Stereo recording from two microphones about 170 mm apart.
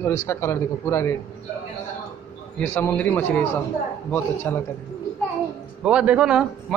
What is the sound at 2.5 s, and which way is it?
Speech, 10° left (ahead or behind).